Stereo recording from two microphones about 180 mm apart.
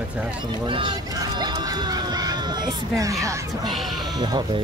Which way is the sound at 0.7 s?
25° right (ahead or behind).